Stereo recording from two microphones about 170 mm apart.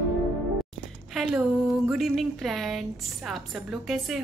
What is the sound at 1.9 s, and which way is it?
A woman's voice, centre (ahead or behind).